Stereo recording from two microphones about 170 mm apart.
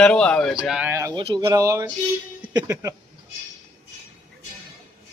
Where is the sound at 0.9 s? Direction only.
15° right (ahead or behind).